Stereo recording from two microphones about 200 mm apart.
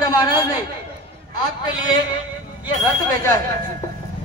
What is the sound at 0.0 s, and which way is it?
Chatter, 20° left (ahead or behind).